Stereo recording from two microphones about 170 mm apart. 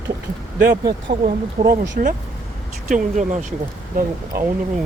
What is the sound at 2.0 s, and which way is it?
Speech, 55° right (ahead or behind).